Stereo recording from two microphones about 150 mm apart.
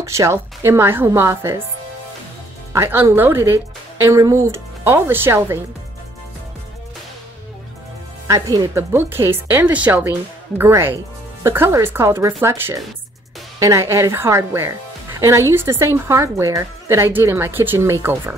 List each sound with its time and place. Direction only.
0.0 s speech: 20° right (ahead or behind)
2.7 s speech: 15° right (ahead or behind)
8.3 s speech: 20° right (ahead or behind)